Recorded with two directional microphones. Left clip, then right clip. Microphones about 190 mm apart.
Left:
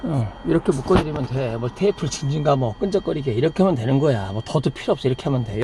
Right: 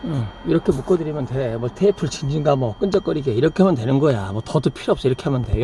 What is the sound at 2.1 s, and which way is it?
Speech, 55° right (ahead or behind).